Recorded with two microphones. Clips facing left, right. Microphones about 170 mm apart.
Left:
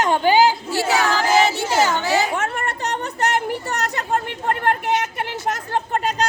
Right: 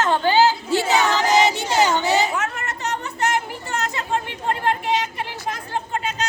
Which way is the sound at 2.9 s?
65° left (ahead or behind).